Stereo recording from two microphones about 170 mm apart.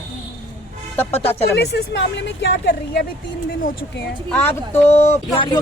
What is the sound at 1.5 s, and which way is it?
Speech, 75° left (ahead or behind).